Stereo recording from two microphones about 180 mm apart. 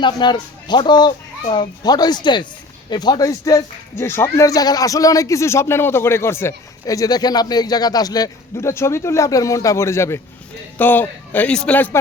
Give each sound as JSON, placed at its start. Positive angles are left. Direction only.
{"t": 0.0, "sound": "a man's voice", "side_deg": 25}